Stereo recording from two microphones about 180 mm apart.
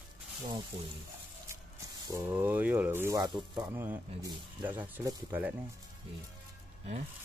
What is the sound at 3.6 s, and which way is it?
Speech, 10° right (ahead or behind).